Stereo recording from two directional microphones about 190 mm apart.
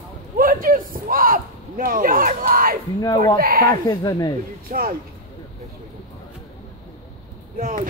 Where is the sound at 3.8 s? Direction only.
20° left (ahead or behind).